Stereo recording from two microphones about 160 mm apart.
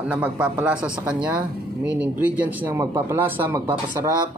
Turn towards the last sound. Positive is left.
turn(degrees=-25)  # may be behind; listen again after turning